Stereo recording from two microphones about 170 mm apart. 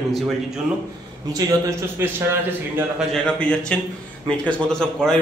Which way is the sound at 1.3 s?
15° right (ahead or behind).